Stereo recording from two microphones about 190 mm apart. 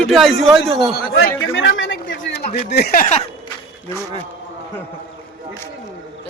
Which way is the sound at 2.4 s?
35° left (ahead or behind).